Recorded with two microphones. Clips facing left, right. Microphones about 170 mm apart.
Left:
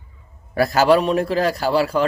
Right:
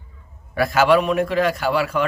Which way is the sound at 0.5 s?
40° left (ahead or behind).